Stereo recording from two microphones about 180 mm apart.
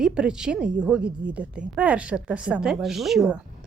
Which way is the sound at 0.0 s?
5° right (ahead or behind).